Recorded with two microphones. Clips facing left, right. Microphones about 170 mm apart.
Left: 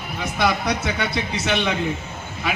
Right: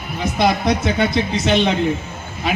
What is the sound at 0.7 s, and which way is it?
A man's voice, 35° right (ahead or behind).